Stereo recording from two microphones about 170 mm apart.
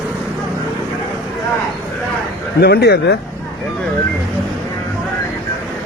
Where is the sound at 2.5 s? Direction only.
65° left (ahead or behind).